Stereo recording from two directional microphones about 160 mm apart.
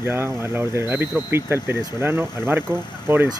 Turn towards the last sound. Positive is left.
turn(degrees=-15)  # may be behind; listen again after turning